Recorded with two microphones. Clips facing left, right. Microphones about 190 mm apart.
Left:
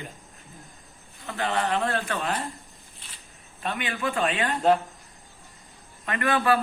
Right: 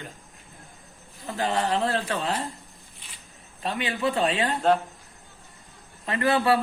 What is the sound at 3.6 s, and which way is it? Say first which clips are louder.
Speech: right 2 dB; 30° right (ahead or behind).